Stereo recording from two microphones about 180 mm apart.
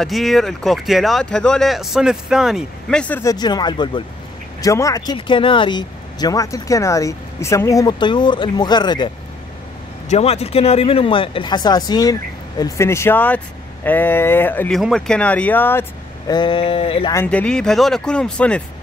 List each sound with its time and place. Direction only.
0.0 s speech: centre (ahead or behind); by 9.1 s 25° left (ahead or behind)
10.0 s speech: 35° left (ahead or behind); by 15.8 s 10° left (ahead or behind)
16.3 s speech: 25° left (ahead or behind)
17.1 s speech: 10° left (ahead or behind)